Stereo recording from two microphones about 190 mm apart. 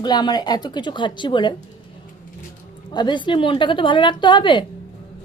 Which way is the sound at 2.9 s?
25° left (ahead or behind).